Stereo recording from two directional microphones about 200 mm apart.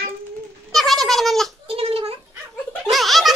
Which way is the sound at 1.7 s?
30° right (ahead or behind).